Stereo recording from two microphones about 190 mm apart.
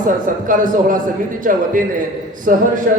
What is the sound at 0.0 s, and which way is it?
A man's voice, 45° right (ahead or behind).